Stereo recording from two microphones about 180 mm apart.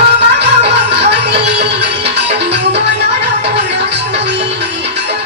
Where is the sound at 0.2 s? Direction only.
70° right (ahead or behind).